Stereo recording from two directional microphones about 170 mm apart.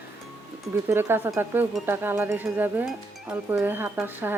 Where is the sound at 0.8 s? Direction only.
15° right (ahead or behind).